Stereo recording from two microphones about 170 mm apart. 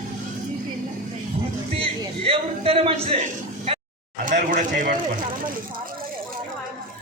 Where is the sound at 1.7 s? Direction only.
35° right (ahead or behind).